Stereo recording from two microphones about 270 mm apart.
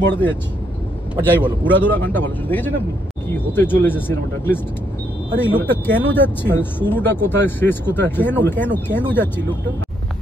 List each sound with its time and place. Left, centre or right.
0.0 s speech: centre
1.4 s speech: centre